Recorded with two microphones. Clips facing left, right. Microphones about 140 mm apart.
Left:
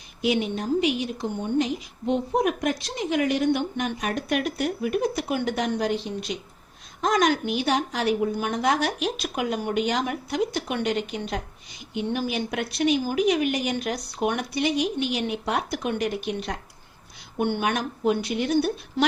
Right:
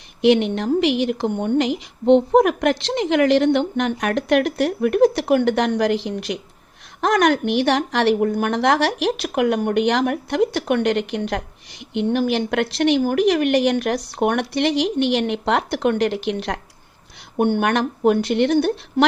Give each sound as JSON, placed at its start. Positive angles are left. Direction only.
{"t": 0.2, "sound": "a woman's voice", "side_deg": -70}
{"t": 7.0, "sound": "a woman's voice", "side_deg": -65}
{"t": 17.3, "sound": "a woman's voice", "side_deg": -60}